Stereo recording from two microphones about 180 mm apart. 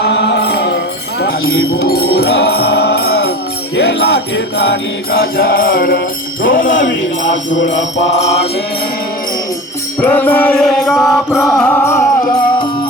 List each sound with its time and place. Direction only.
0.0 s music: 75° left (ahead or behind); by 6.0 s 55° left (ahead or behind)
6.4 s jingle bell: 50° left (ahead or behind)
6.7 s music: 90° left
10.0 s music: 10° left (ahead or behind)
11.3 s mantra: centre (ahead or behind)